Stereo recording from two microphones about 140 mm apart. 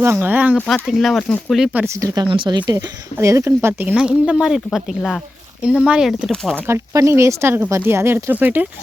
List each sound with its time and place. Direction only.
0.0 s speech: 15° right (ahead or behind)
0.5 s speech: 10° left (ahead or behind)
0.9 s speech: centre (ahead or behind); by 2.2 s 25° right (ahead or behind)
2.2 s speech: 35° right (ahead or behind)
2.7 s speech: 20° right (ahead or behind)
3.9 s speech: 5° right (ahead or behind)
6.6 s speech: 20° right (ahead or behind)